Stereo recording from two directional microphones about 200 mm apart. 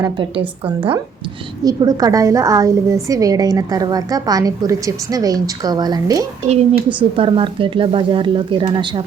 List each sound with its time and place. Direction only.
0.0 s a woman's voice: 25° right (ahead or behind)
6.5 s speech: 30° right (ahead or behind)